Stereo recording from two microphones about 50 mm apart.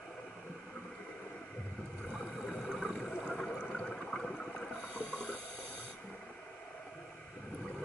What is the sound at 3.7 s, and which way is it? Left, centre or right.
Toilet flush, centre.